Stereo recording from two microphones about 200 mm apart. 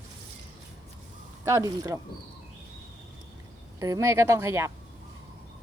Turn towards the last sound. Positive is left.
turn(degrees=-15)  # may be behind; listen again after turning